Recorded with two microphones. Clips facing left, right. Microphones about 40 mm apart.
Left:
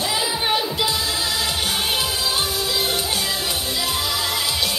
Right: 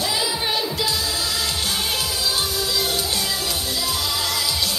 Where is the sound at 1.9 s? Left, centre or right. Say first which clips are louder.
Left 2 dB; left.